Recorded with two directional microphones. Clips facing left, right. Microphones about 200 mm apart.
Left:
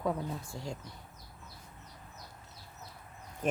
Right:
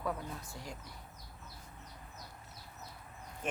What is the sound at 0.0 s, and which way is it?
Speech, 25° left (ahead or behind).